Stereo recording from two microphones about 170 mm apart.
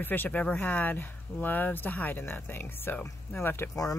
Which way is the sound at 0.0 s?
10° left (ahead or behind).